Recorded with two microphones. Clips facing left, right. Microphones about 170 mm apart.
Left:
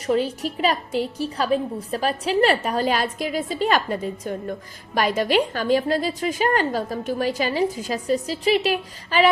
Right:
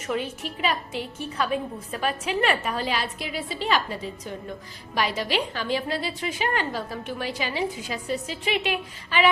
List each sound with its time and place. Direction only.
0.1 s a woman's voice: 35° left (ahead or behind)